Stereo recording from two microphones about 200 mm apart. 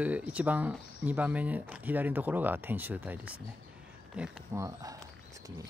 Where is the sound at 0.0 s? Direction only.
5° right (ahead or behind).